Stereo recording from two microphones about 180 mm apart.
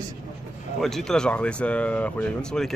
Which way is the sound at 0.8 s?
Centre (ahead or behind).